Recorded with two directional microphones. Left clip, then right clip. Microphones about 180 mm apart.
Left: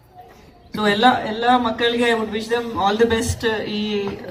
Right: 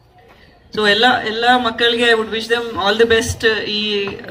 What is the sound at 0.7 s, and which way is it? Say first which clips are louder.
A man's voice: right 3 dB; 15° right (ahead or behind).